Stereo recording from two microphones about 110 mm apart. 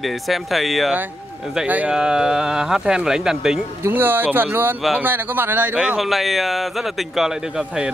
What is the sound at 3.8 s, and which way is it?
Speech, 20° right (ahead or behind).